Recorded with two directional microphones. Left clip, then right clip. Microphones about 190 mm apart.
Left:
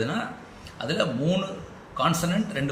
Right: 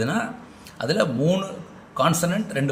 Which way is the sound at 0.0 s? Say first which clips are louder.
Right 3 dB; 45° right (ahead or behind).